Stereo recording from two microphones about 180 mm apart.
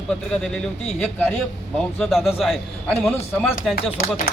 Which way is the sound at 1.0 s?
10° left (ahead or behind).